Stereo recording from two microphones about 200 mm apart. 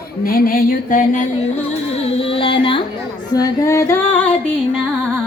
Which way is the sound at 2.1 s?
25° left (ahead or behind).